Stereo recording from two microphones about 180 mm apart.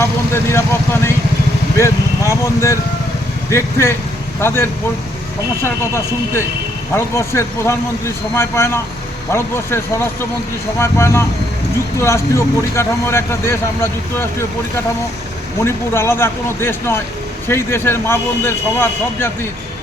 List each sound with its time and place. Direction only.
0.0 s vehicle: 15° left (ahead or behind)
1.7 s speech: 15° left (ahead or behind)
15.6 s speech: 15° left (ahead or behind)